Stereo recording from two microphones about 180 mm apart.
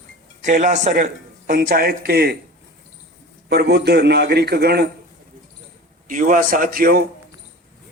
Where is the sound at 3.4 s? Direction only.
65° right (ahead or behind).